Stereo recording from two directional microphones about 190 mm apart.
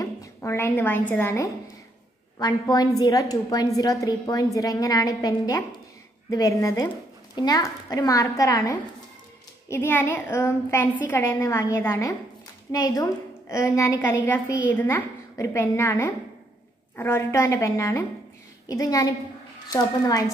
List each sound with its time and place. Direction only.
0.0 s a woman's voice: 15° left (ahead or behind)